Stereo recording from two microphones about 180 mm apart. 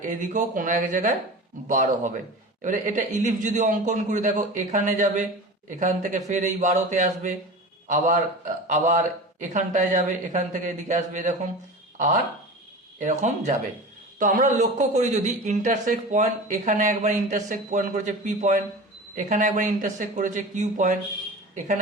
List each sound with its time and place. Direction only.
0.0 s a man's voice: 45° right (ahead or behind)